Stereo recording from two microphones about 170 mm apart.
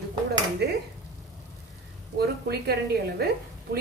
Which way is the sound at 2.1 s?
70° right (ahead or behind).